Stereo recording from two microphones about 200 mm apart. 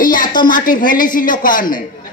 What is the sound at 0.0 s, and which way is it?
A woman's voice, 40° left (ahead or behind).